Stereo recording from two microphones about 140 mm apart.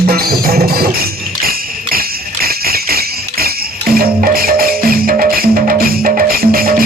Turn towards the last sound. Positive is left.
turn(degrees=-90)